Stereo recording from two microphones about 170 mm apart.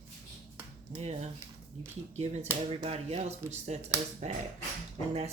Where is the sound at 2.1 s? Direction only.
40° right (ahead or behind).